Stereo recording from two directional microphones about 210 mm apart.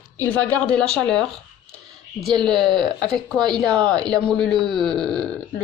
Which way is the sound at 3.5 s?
Centre (ahead or behind).